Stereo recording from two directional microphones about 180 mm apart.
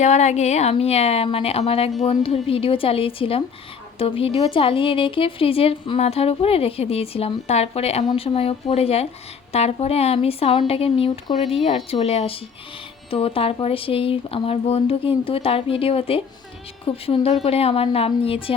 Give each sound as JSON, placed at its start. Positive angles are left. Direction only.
{"t": 0.0, "sound": "a woman's voice", "side_deg": 40}